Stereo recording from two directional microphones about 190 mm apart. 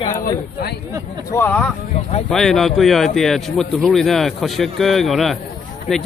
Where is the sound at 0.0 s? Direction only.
40° left (ahead or behind).